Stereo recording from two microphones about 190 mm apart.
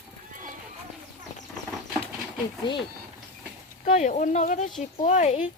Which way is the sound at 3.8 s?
40° left (ahead or behind).